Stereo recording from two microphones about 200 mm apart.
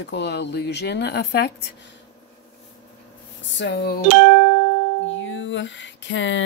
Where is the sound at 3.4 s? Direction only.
60° left (ahead or behind).